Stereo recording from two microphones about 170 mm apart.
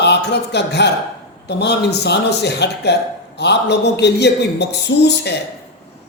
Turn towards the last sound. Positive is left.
turn(degrees=80)